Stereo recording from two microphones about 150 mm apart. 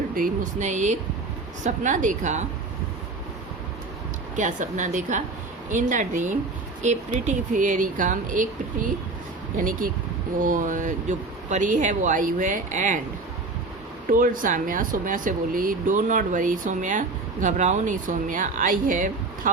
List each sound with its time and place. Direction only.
0.1 s speech: 60° right (ahead or behind)
4.4 s speech: 55° right (ahead or behind)
14.1 s speech: 65° right (ahead or behind)